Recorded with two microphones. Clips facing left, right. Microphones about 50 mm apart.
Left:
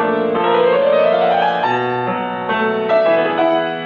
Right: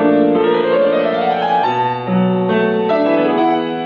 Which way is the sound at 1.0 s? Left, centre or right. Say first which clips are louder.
Left 2 dB; left.